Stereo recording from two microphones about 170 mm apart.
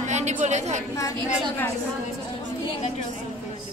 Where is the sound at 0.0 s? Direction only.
45° right (ahead or behind).